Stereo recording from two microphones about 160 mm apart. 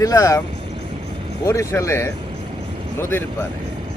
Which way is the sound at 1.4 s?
20° left (ahead or behind).